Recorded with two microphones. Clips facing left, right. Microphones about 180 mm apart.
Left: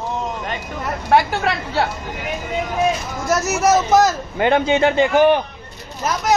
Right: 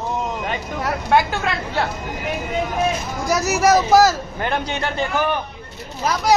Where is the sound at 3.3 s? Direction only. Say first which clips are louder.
Even; centre (ahead or behind).